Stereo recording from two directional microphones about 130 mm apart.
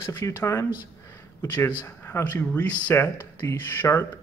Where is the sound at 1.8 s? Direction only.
20° left (ahead or behind).